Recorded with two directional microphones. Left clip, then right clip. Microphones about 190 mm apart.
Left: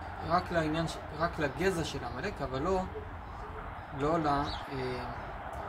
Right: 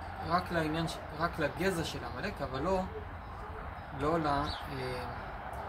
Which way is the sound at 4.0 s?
10° left (ahead or behind).